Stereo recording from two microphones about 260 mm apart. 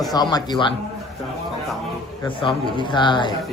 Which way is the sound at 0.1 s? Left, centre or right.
Centre.